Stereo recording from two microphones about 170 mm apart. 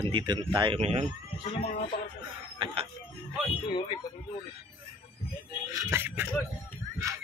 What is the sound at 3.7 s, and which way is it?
Speech, 25° left (ahead or behind).